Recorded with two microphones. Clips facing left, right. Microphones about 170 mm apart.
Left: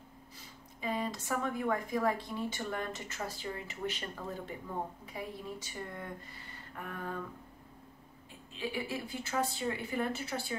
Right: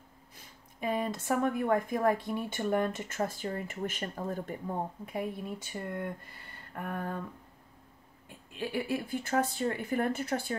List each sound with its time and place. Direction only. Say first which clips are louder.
0.7 s speech: right 4 dB; 55° right (ahead or behind)
6.7 s a sound: right 6 dB; 50° right (ahead or behind)
8.5 s speech: right 4 dB; 55° right (ahead or behind)